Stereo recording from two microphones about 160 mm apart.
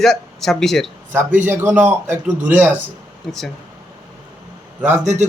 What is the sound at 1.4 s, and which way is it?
A man's voice, 15° right (ahead or behind).